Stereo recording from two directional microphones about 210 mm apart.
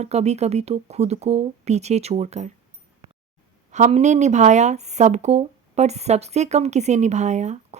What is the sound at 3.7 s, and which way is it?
Speech, 35° right (ahead or behind).